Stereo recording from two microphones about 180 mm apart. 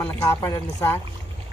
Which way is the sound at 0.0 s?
15° left (ahead or behind).